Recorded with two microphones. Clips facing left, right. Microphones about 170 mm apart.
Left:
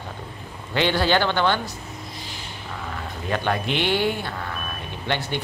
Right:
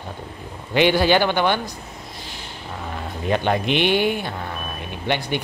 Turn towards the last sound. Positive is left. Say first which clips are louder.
# right 3 dB
turn(degrees=-15)  # may be behind; listen again after turning